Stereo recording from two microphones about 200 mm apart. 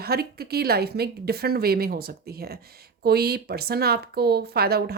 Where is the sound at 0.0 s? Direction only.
50° right (ahead or behind).